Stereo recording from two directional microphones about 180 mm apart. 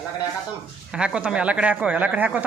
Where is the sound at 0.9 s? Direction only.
5° right (ahead or behind).